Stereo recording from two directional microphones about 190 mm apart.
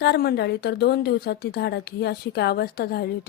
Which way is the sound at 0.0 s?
60° left (ahead or behind).